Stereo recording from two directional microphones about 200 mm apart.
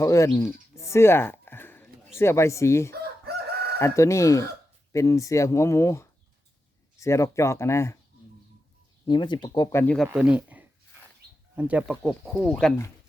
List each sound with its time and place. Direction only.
0.0 s a sound: 15° left (ahead or behind)
2.1 s speech: 15° left (ahead or behind)
9.0 s speech: 20° left (ahead or behind)
9.8 s speech: 5° left (ahead or behind)
10.1 s speech: 5° right (ahead or behind)